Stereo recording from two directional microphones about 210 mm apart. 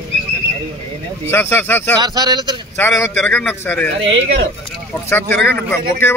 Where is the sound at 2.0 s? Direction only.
20° right (ahead or behind).